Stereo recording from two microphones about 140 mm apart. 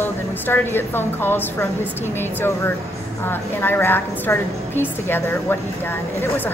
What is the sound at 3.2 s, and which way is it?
Speech, 15° left (ahead or behind).